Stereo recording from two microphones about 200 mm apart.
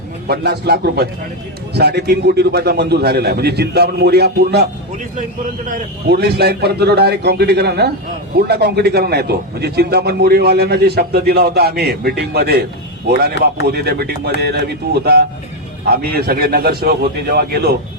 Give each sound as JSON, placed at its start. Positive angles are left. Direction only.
{"t": 0.3, "sound": "a man's voice", "side_deg": -55}